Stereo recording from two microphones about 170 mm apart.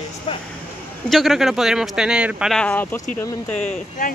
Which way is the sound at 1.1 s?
Centre (ahead or behind).